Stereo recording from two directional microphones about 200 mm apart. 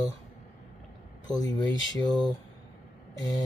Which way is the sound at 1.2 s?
20° left (ahead or behind).